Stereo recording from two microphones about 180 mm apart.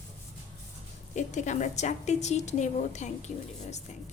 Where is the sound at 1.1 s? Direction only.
40° left (ahead or behind).